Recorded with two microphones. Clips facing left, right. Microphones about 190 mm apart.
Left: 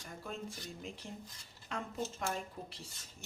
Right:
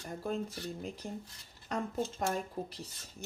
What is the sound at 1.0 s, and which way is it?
Speech, 55° right (ahead or behind).